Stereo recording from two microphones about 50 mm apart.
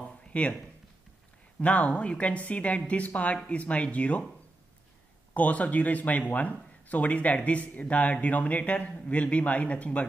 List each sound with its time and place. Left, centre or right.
0.0 s a sound: left
1.6 s speech: left
5.3 s speech: left